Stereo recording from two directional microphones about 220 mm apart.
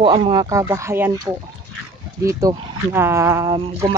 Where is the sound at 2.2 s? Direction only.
15° right (ahead or behind).